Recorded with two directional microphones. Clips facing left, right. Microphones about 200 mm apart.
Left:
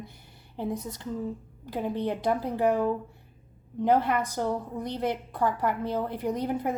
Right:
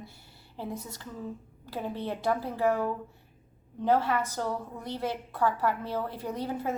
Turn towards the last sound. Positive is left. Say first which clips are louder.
# left 4 dB
turn(degrees=15)  # may be behind; listen again after turning